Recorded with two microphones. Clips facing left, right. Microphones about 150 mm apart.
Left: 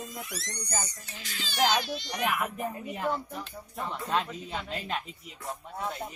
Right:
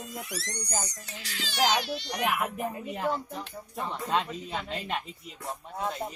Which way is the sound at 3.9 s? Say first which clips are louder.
Right 1 dB; 15° right (ahead or behind).